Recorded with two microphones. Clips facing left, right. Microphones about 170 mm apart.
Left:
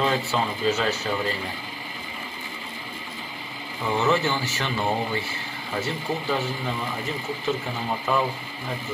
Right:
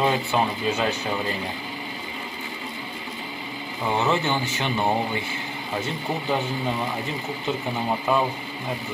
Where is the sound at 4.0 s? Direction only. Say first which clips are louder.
Left 1 dB; 15° right (ahead or behind).